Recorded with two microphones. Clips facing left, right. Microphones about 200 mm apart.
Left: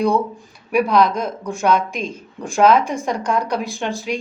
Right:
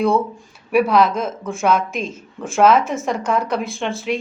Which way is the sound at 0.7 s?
5° right (ahead or behind).